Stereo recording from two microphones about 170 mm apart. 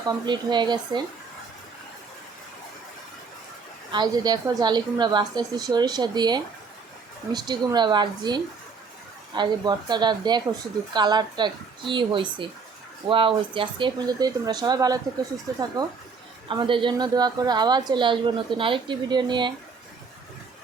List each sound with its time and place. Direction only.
0.1 s a woman's voice: 25° right (ahead or behind)
3.9 s a woman's voice: 25° right (ahead or behind)
16.5 s a woman's voice: 30° right (ahead or behind)